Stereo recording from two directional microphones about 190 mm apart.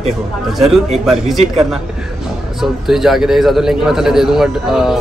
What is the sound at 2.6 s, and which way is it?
Speech, centre (ahead or behind).